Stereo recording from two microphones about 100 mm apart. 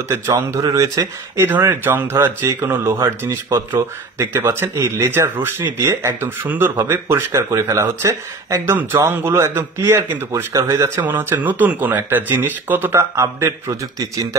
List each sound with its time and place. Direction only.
0.1 s speech: 30° right (ahead or behind)
1.5 s speech: 20° right (ahead or behind)
11.1 s speech: 20° right (ahead or behind)